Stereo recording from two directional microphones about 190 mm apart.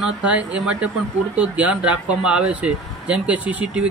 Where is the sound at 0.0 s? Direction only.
5° right (ahead or behind).